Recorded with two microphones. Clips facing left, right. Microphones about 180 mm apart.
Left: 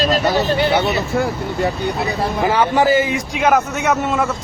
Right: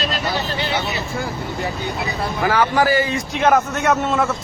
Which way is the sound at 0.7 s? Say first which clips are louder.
Left 7 dB; 60° left (ahead or behind).